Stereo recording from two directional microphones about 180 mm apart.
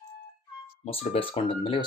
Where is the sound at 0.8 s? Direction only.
35° left (ahead or behind).